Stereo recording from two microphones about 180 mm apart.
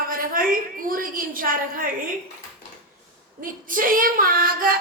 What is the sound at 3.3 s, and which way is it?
A woman's voice, 50° right (ahead or behind).